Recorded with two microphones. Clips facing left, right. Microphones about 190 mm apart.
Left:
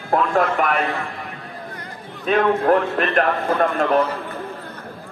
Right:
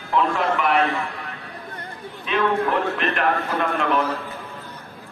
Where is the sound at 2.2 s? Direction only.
45° left (ahead or behind).